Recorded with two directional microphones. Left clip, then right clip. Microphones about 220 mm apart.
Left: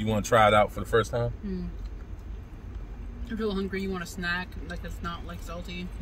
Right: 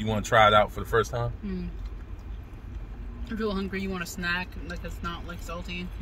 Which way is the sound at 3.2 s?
Centre (ahead or behind).